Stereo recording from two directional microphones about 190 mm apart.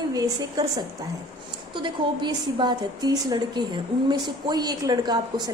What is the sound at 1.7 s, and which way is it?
A woman's voice, 25° right (ahead or behind).